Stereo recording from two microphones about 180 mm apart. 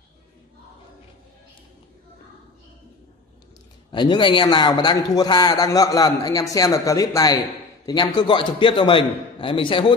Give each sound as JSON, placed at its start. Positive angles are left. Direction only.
{"t": 3.9, "sound": "a man's voice", "side_deg": 25}